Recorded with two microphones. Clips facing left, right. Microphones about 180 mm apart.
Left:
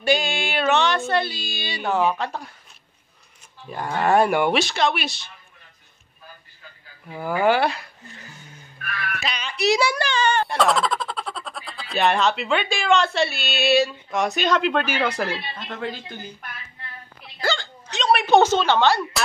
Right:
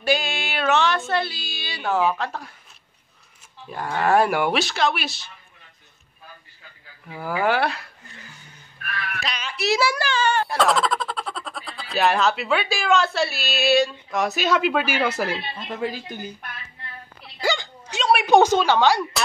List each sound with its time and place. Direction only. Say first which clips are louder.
0.0 s speech: left 2 dB; 5° right (ahead or behind)
3.7 s a child's voice: even; centre (ahead or behind)
7.1 s a child's voice: left 3 dB; centre (ahead or behind)
9.2 s a child's voice: left 4 dB; 5° right (ahead or behind)
17.4 s speech: right 1 dB; 15° right (ahead or behind)